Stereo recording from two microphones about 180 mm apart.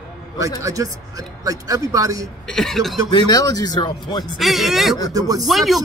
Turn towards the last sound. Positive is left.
turn(degrees=0)  # may be behind; listen again after turning